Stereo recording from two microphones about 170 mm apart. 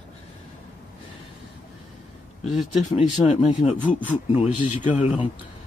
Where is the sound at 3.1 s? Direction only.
45° left (ahead or behind).